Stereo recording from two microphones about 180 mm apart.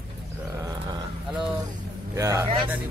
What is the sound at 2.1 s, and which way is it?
Speech, 15° right (ahead or behind).